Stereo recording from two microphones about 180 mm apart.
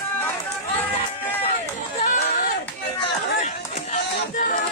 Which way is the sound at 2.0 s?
45° left (ahead or behind).